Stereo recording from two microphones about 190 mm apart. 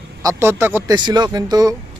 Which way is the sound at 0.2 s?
15° right (ahead or behind).